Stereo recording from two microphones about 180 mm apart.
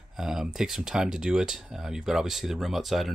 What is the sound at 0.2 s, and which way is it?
Speech, 5° right (ahead or behind).